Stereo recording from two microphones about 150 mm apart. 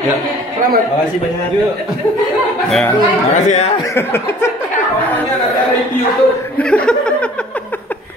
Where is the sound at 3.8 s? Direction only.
15° left (ahead or behind).